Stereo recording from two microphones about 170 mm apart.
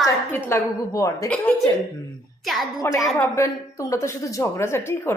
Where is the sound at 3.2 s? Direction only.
15° left (ahead or behind).